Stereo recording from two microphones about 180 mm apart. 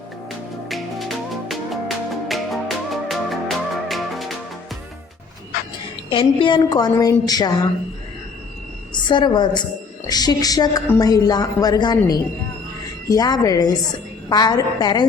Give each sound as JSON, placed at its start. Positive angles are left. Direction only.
{"t": 0.3, "sound": "music", "side_deg": 0}
{"t": 6.1, "sound": "a woman's voice", "side_deg": 30}
{"t": 9.0, "sound": "a woman's voice", "side_deg": 25}